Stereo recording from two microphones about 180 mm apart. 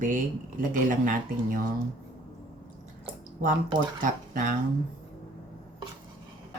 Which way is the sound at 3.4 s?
45° right (ahead or behind).